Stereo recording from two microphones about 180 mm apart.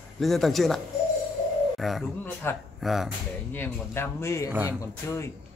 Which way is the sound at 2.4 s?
15° left (ahead or behind).